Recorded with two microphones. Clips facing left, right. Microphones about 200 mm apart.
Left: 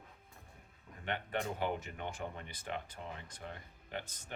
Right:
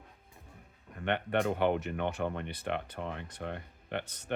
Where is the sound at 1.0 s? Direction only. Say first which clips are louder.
Right 8 dB; 65° right (ahead or behind).